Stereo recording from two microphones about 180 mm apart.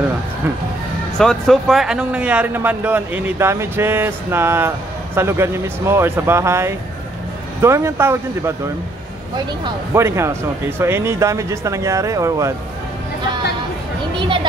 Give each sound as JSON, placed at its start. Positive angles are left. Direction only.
{"t": 1.1, "sound": "speech", "side_deg": 5}
{"t": 9.9, "sound": "speech", "side_deg": -15}
{"t": 14.2, "sound": "speech", "side_deg": -25}